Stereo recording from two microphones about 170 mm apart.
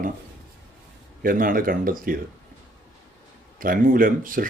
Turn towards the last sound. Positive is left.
turn(degrees=-55)  # may be behind; listen again after turning